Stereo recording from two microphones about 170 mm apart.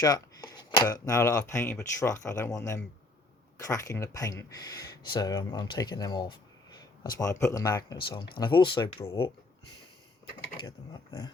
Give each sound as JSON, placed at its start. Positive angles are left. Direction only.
{"t": 0.0, "sound": "speech", "side_deg": 25}